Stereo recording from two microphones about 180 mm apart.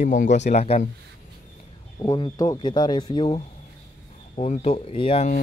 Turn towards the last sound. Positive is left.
turn(degrees=30)  # may be behind; listen again after turning